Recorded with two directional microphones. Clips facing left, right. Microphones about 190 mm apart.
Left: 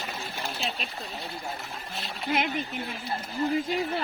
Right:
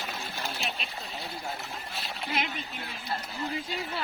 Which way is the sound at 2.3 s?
50° left (ahead or behind).